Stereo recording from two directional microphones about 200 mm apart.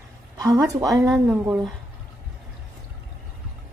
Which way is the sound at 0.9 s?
5° right (ahead or behind).